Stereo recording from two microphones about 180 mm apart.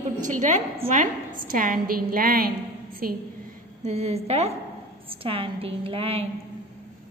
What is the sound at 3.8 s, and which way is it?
A woman's voice, 40° right (ahead or behind).